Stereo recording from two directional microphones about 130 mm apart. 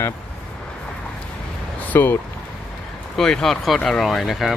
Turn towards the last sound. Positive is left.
turn(degrees=0)  # may be behind; listen again after turning